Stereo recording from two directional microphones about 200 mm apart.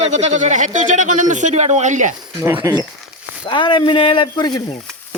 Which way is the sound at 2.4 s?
15° right (ahead or behind).